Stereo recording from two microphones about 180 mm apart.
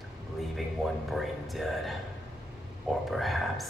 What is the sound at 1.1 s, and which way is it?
Speech, centre (ahead or behind).